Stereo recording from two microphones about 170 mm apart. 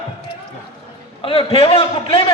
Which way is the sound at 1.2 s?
30° left (ahead or behind).